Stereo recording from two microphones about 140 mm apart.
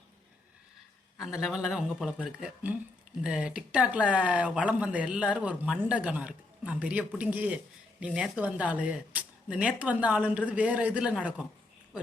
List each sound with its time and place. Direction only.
1.2 s a man's voice: centre (ahead or behind)
3.2 s speech: 5° right (ahead or behind)